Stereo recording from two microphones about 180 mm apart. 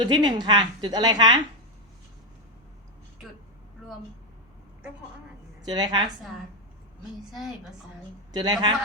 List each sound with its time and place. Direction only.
0.0 s a woman's voice: 25° right (ahead or behind)
5.6 s a woman's voice: 25° right (ahead or behind)
7.3 s a woman's voice: centre (ahead or behind)
8.3 s a man's voice: 25° right (ahead or behind)